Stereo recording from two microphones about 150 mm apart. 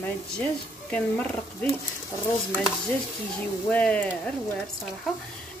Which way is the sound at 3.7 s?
10° left (ahead or behind).